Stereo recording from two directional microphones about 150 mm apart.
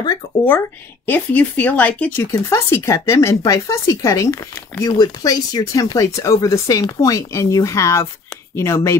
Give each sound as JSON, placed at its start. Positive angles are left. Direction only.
{"t": 0.5, "sound": "speech", "side_deg": 15}